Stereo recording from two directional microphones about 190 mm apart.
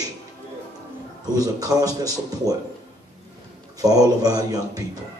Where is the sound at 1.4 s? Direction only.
20° right (ahead or behind).